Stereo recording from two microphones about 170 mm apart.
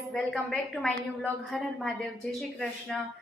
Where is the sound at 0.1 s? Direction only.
Centre (ahead or behind).